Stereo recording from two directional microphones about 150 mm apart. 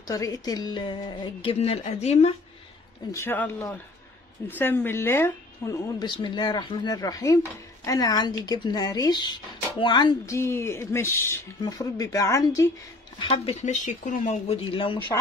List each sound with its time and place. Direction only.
0.0 s a woman's voice: 25° left (ahead or behind); by 2.3 s 45° left (ahead or behind)
3.1 s speech: 15° left (ahead or behind)
6.0 s speech: 30° left (ahead or behind)
13.5 s speech: 50° left (ahead or behind)
14.6 s a woman's voice: 35° left (ahead or behind)